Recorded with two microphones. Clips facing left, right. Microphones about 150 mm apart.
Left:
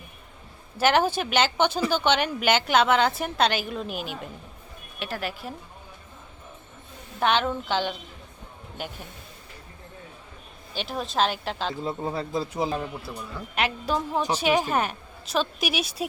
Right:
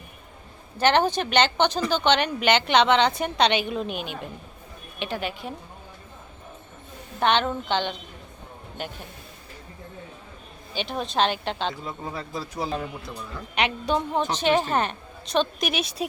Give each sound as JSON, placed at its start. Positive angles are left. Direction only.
{"t": 0.8, "sound": "a woman's voice", "side_deg": 5}
{"t": 7.2, "sound": "a woman's voice", "side_deg": 5}
{"t": 10.8, "sound": "a woman's voice", "side_deg": 0}
{"t": 11.7, "sound": "speech", "side_deg": 30}
{"t": 13.6, "sound": "a woman's voice", "side_deg": 5}